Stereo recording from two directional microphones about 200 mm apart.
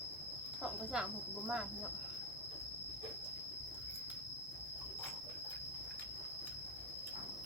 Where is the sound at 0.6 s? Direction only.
5° right (ahead or behind).